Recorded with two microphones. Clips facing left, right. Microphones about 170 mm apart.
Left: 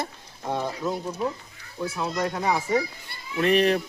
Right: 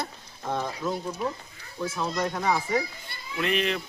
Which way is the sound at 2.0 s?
5° left (ahead or behind).